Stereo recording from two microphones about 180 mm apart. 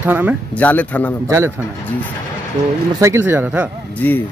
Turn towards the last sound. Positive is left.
turn(degrees=10)  # may be behind; listen again after turning